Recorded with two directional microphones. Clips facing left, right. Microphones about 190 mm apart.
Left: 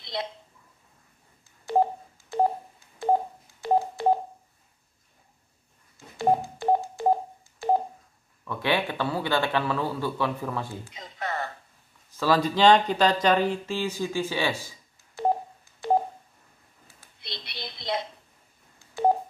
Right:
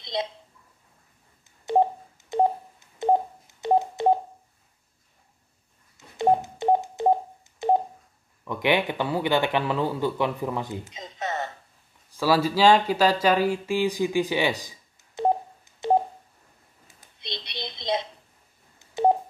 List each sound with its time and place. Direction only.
0.0 s a sound: 20° right (ahead or behind)
1.7 s telephone dialing: 20° right (ahead or behind)
6.1 s telephone dialing: 20° right (ahead or behind)
8.5 s a man's voice: 15° right (ahead or behind)
12.1 s speech: 10° right (ahead or behind)
16.8 s a sound: 20° right (ahead or behind)